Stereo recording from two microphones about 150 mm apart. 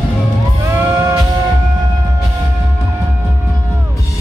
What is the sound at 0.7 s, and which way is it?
Music, 15° right (ahead or behind).